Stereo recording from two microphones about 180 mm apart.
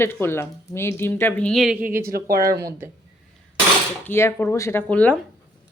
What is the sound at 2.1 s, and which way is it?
Speech, 55° right (ahead or behind).